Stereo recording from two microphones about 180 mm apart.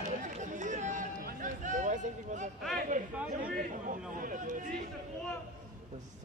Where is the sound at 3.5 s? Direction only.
45° right (ahead or behind).